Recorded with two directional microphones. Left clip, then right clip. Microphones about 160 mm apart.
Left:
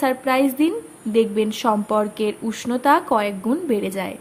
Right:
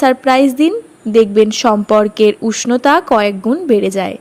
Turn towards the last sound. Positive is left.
turn(degrees=-40)  # may be behind; listen again after turning